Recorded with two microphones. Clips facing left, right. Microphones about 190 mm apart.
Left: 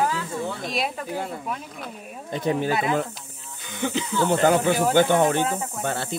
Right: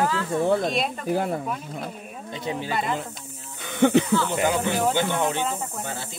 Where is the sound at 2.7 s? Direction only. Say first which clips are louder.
Left 3 dB; 5° left (ahead or behind).